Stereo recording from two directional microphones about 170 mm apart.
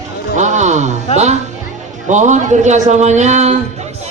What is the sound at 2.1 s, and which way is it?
A man's voice, 45° right (ahead or behind).